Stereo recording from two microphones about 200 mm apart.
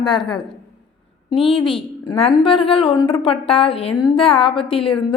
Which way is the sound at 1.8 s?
25° left (ahead or behind).